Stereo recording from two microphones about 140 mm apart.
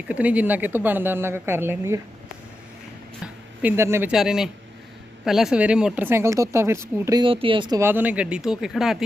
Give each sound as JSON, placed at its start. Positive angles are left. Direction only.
{"t": 0.1, "sound": "speech", "side_deg": -10}
{"t": 3.6, "sound": "speech", "side_deg": -15}
{"t": 4.1, "sound": "speech", "side_deg": -5}
{"t": 7.2, "sound": "speech", "side_deg": -40}
{"t": 7.8, "sound": "speech", "side_deg": -15}